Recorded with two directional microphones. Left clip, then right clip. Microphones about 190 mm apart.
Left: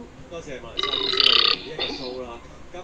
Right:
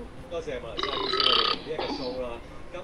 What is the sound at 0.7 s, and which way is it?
Speech, 15° right (ahead or behind).